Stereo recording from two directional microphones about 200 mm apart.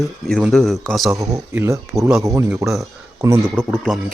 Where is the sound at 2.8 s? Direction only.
15° right (ahead or behind).